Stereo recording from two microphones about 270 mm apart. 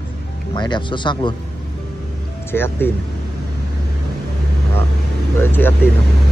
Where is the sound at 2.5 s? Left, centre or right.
Centre.